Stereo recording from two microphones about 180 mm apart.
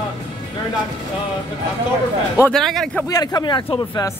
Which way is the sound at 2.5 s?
Centre (ahead or behind).